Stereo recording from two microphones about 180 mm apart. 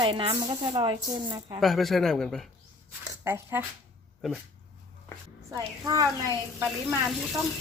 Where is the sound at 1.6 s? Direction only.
Centre (ahead or behind).